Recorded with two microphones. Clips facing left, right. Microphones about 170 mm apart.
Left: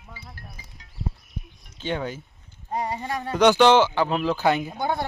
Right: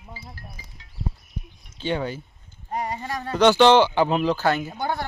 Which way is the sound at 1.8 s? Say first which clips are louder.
Right 2 dB; 10° right (ahead or behind).